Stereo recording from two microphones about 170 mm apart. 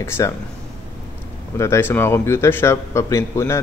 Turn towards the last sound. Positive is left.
turn(degrees=15)  # may be behind; listen again after turning